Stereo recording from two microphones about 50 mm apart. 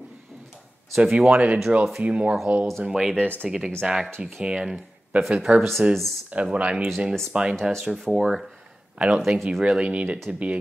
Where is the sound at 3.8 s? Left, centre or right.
Centre.